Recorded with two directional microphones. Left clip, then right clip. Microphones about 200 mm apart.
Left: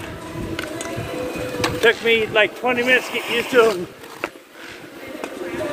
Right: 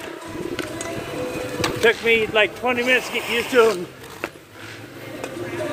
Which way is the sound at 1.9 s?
10° right (ahead or behind).